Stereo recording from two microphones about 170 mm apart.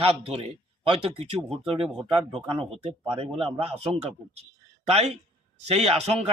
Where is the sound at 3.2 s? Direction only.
35° right (ahead or behind).